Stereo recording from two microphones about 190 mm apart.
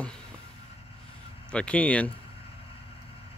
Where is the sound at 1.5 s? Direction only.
5° left (ahead or behind).